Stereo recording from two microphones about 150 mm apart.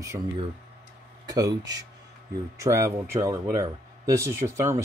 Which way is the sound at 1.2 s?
25° right (ahead or behind).